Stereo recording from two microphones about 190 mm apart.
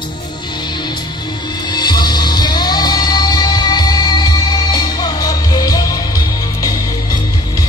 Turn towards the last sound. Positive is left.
turn(degrees=20)  # may be behind; listen again after turning